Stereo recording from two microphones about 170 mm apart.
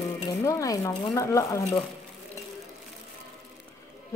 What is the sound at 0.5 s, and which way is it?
Speech, 20° left (ahead or behind).